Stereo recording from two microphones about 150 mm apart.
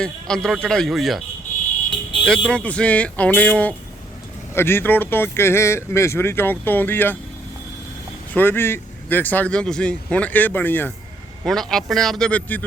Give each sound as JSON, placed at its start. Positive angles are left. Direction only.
{"t": 0.0, "sound": "a man's voice", "side_deg": 5}
{"t": 2.2, "sound": "speech", "side_deg": 5}
{"t": 8.3, "sound": "speech", "side_deg": 15}
{"t": 11.4, "sound": "a man's voice", "side_deg": 0}